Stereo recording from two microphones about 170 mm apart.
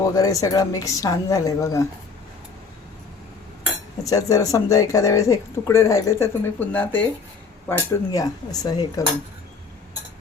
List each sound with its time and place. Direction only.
0.1 s speech: 20° left (ahead or behind)
4.0 s speech: 20° left (ahead or behind)